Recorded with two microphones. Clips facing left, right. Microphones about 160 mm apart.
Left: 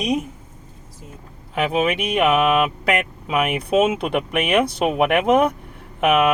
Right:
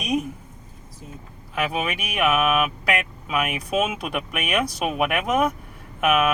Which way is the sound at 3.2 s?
25° left (ahead or behind).